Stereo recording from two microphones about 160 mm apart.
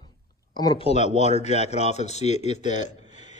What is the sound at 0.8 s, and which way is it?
Speech, 45° left (ahead or behind).